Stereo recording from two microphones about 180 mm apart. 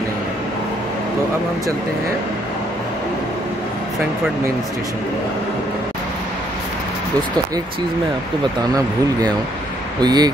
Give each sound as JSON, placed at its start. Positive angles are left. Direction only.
{"t": 9.9, "sound": "speech", "side_deg": -20}